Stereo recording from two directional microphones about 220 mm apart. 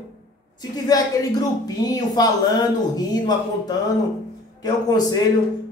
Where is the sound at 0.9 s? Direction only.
15° left (ahead or behind).